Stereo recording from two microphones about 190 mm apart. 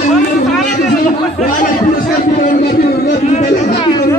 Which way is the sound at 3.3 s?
40° left (ahead or behind).